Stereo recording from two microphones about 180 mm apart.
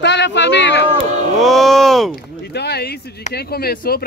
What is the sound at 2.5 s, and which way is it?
Speech, 65° left (ahead or behind).